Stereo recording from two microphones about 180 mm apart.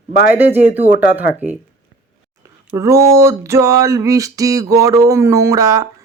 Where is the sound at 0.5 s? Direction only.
10° right (ahead or behind).